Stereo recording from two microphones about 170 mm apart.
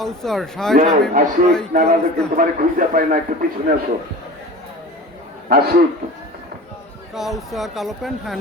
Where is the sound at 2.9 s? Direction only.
60° right (ahead or behind).